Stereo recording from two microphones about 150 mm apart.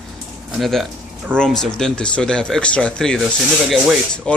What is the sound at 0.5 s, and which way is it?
Speech, centre (ahead or behind).